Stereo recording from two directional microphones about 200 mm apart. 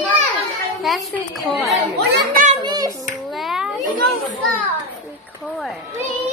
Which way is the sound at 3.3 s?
Centre (ahead or behind).